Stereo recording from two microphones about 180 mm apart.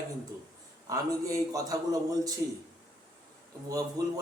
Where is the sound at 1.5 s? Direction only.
20° right (ahead or behind).